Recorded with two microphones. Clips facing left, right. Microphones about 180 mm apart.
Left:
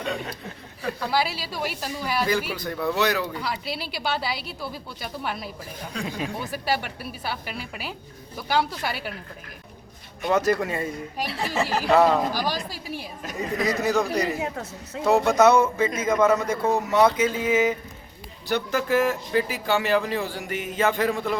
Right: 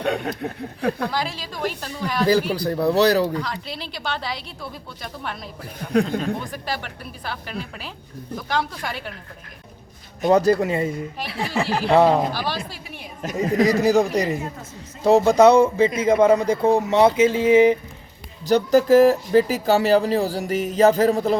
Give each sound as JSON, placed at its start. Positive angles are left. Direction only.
{"t": 0.0, "sound": "speech", "side_deg": -65}
{"t": 1.1, "sound": "speech", "side_deg": 10}
{"t": 2.5, "sound": "speech", "side_deg": -35}
{"t": 3.3, "sound": "speech", "side_deg": 10}
{"t": 10.2, "sound": "a sound", "side_deg": -40}
{"t": 11.3, "sound": "speech", "side_deg": 0}
{"t": 11.9, "sound": "a sound", "side_deg": -30}
{"t": 12.4, "sound": "speech", "side_deg": 40}
{"t": 13.3, "sound": "speech", "side_deg": -35}
{"t": 14.5, "sound": "speech", "side_deg": 75}
{"t": 15.0, "sound": "speech", "side_deg": -35}
{"t": 16.9, "sound": "a sound", "side_deg": -25}
{"t": 18.4, "sound": "speech", "side_deg": -40}